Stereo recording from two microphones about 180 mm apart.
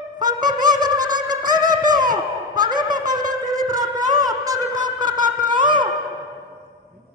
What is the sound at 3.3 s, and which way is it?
Music, 20° right (ahead or behind).